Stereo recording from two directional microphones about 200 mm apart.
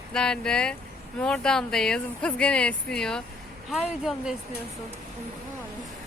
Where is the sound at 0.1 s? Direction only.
5° left (ahead or behind).